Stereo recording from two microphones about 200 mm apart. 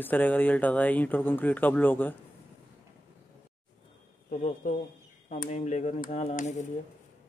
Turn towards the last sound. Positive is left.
turn(degrees=35)  # may be behind; listen again after turning